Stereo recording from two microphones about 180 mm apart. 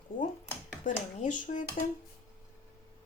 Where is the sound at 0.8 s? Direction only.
45° left (ahead or behind).